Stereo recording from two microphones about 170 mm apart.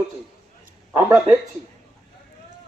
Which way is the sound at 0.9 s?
15° right (ahead or behind).